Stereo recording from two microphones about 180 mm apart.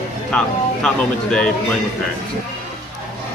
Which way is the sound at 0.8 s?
5° left (ahead or behind).